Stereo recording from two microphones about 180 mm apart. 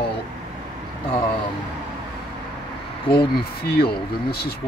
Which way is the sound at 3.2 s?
60° left (ahead or behind).